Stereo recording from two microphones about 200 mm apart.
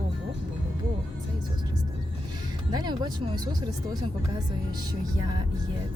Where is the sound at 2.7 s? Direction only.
20° right (ahead or behind).